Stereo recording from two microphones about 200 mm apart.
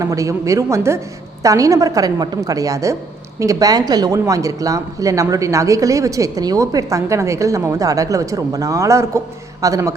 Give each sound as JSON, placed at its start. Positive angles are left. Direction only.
{"t": 0.0, "sound": "a woman's voice", "side_deg": -15}